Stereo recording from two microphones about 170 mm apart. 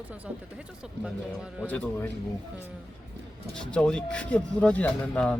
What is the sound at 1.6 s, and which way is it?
Speech, 10° left (ahead or behind).